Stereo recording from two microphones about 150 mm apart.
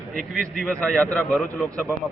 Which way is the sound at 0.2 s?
Centre (ahead or behind).